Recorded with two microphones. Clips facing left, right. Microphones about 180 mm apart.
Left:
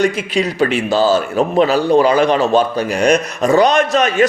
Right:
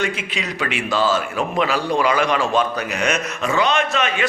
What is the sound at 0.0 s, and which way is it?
A man's voice, 40° left (ahead or behind).